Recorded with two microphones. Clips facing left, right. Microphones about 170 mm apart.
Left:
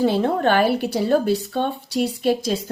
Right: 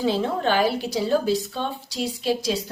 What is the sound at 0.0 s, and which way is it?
A woman's voice, 55° left (ahead or behind).